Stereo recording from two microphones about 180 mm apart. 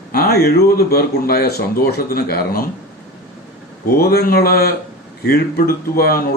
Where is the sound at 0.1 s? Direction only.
60° left (ahead or behind).